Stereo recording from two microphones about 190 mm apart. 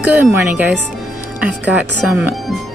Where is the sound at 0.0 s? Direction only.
10° right (ahead or behind).